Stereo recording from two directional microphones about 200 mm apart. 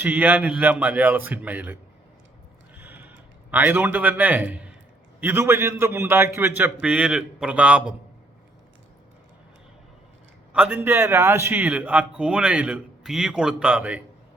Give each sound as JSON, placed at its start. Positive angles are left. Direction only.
{"t": 0.0, "sound": "a man's voice", "side_deg": -10}
{"t": 2.7, "sound": "a sound", "side_deg": -10}
{"t": 5.2, "sound": "a man's voice", "side_deg": -10}
{"t": 10.5, "sound": "a man's voice", "side_deg": -5}